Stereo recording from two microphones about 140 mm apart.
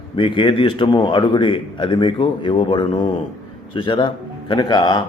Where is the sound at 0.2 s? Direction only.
35° left (ahead or behind).